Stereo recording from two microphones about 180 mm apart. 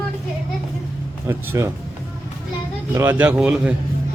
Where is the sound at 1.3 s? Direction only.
15° right (ahead or behind).